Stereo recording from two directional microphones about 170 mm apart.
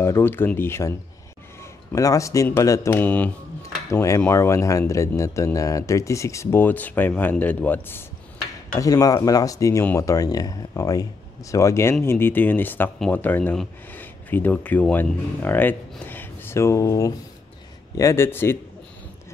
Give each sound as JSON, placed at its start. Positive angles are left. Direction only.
{"t": 0.0, "sound": "speech", "side_deg": 15}
{"t": 8.7, "sound": "speech", "side_deg": 20}